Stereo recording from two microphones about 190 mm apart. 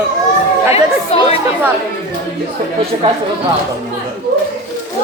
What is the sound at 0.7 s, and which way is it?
Speech, 30° left (ahead or behind).